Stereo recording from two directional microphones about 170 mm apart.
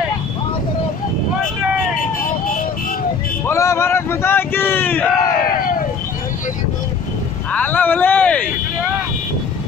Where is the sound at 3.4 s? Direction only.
15° left (ahead or behind).